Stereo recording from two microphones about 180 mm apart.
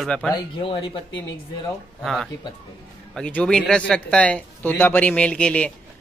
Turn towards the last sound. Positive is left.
turn(degrees=5)  # may be behind; listen again after turning